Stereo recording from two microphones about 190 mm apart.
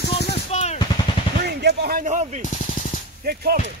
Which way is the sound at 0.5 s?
35° left (ahead or behind).